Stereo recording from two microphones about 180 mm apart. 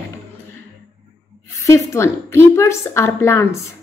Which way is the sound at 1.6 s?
15° left (ahead or behind).